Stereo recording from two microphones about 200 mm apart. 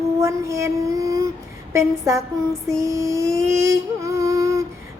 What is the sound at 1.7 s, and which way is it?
Child singing, 15° right (ahead or behind).